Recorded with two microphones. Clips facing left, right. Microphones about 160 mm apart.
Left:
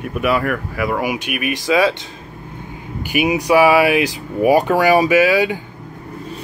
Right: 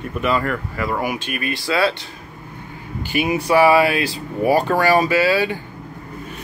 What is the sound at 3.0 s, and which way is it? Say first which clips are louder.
Speech: left 3 dB; 15° left (ahead or behind).